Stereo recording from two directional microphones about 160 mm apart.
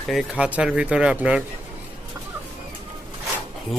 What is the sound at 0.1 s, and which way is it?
Speech, 5° right (ahead or behind).